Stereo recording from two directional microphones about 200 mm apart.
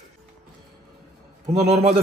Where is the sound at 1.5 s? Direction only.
30° right (ahead or behind).